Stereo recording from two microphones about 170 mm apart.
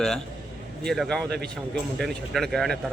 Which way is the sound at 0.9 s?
5° left (ahead or behind).